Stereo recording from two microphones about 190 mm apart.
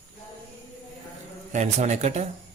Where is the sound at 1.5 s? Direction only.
40° right (ahead or behind).